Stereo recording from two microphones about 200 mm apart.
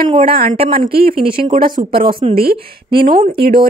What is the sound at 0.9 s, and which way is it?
Speech, 25° right (ahead or behind).